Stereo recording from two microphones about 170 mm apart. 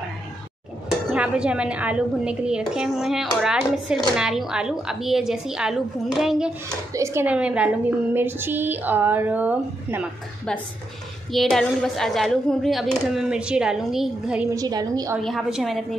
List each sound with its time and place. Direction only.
1.1 s speech: 5° right (ahead or behind)
6.9 s speech: 15° right (ahead or behind)
11.3 s speech: centre (ahead or behind)
14.5 s a woman's voice: 20° right (ahead or behind)
15.2 s speech: centre (ahead or behind)